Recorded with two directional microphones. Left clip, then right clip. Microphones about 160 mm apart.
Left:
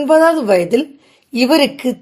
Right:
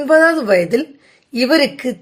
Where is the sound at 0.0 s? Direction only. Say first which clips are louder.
Left 1 dB; 20° left (ahead or behind).